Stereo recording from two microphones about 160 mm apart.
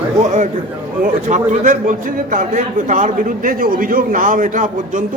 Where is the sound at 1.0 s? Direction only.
50° right (ahead or behind).